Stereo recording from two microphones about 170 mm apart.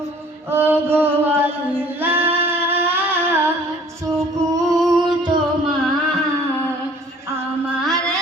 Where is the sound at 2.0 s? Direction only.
10° right (ahead or behind).